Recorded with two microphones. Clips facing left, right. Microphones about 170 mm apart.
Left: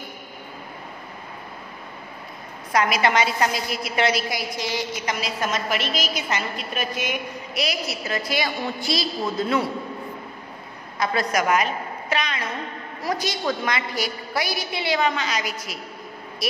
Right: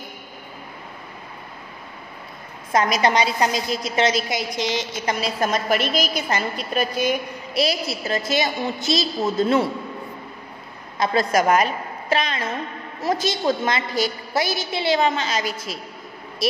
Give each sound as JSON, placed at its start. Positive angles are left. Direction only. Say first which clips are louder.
{"t": 2.9, "sound": "a woman's voice", "louder": "right 2 dB", "side_deg": -35}
{"t": 3.3, "sound": "a woman's voice", "louder": "right 2 dB", "side_deg": -20}
{"t": 11.0, "sound": "a woman's voice", "louder": "right 4 dB", "side_deg": -30}